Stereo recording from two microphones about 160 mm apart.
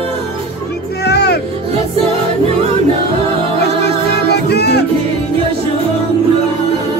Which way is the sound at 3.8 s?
90° left.